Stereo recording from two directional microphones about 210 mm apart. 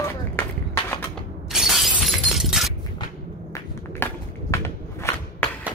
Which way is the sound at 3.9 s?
10° left (ahead or behind).